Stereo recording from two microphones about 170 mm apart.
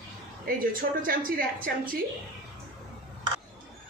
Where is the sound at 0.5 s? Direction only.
55° right (ahead or behind).